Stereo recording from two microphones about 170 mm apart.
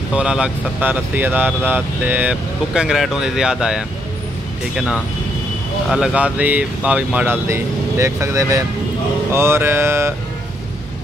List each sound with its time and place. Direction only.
0.1 s speech: 5° right (ahead or behind)